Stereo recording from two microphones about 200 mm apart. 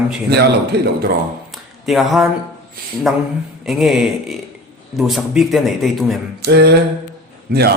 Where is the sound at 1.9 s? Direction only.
Centre (ahead or behind).